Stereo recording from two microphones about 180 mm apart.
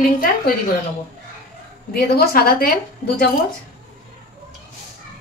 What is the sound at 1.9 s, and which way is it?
A woman's voice, 60° left (ahead or behind).